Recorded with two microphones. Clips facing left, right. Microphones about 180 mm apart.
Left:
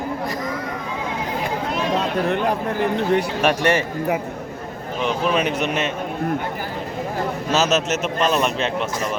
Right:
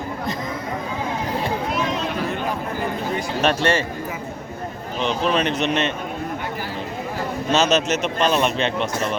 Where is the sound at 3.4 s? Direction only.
15° left (ahead or behind).